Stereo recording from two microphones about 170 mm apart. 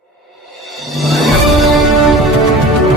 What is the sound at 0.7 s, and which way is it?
Music, centre (ahead or behind).